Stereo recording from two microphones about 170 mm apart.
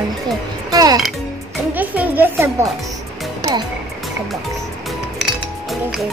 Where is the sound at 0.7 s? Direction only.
20° right (ahead or behind).